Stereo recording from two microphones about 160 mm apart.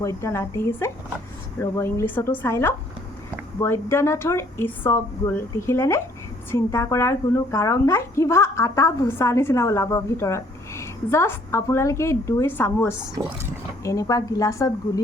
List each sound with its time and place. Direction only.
0.0 s speech: 20° left (ahead or behind)